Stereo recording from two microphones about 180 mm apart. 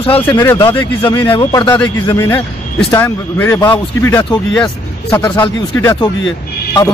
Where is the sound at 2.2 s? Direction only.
15° left (ahead or behind).